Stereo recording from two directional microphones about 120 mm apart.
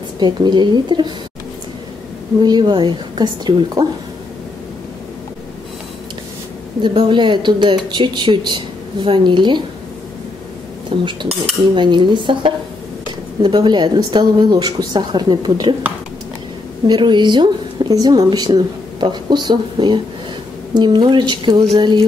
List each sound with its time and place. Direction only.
0.2 s a woman's voice: 40° right (ahead or behind)
2.4 s a woman's voice: 40° right (ahead or behind)
6.8 s a woman's voice: 40° right (ahead or behind)
11.1 s cutlery: 50° right (ahead or behind)
11.7 s a woman's voice: 40° right (ahead or behind)
16.8 s a woman's voice: 40° right (ahead or behind)